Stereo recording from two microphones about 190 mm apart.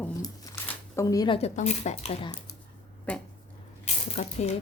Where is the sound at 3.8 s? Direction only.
35° left (ahead or behind).